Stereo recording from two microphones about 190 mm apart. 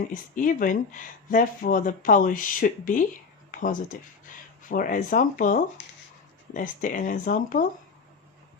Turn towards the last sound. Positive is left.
turn(degrees=45)  # may be behind; listen again after turning